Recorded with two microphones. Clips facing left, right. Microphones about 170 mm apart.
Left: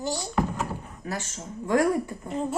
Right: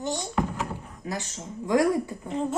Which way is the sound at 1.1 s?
15° right (ahead or behind).